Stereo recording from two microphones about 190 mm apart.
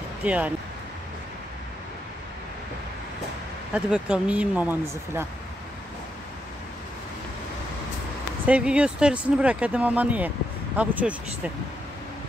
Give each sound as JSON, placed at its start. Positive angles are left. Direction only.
{"t": 0.2, "sound": "speech", "side_deg": -5}
{"t": 3.7, "sound": "speech", "side_deg": -5}
{"t": 8.5, "sound": "speech", "side_deg": -5}